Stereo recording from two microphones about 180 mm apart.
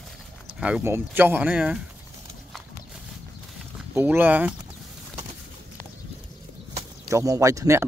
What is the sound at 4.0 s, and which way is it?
Speech, 10° right (ahead or behind).